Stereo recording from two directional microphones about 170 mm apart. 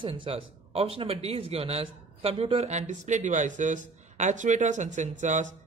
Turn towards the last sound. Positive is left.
turn(degrees=-45)  # may be behind; listen again after turning